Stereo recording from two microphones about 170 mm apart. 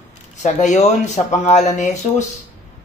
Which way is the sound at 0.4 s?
45° left (ahead or behind).